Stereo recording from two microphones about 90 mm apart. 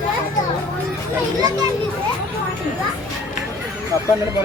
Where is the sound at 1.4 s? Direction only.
45° right (ahead or behind).